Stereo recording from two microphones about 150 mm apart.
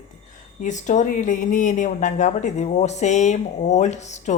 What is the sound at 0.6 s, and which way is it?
A woman's voice, 55° left (ahead or behind).